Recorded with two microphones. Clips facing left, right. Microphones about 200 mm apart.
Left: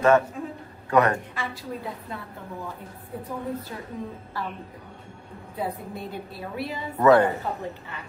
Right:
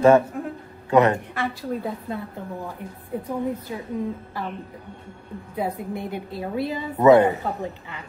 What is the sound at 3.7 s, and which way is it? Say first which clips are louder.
Speech: right 5 dB; 15° right (ahead or behind).